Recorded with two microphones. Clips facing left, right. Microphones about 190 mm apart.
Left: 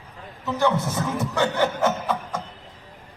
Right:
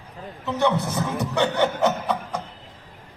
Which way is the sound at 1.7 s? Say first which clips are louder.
Right 1 dB; 15° right (ahead or behind).